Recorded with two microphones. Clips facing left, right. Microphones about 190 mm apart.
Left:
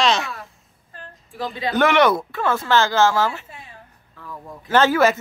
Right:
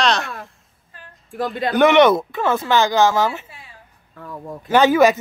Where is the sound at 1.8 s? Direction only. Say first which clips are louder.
Right 4 dB; 20° right (ahead or behind).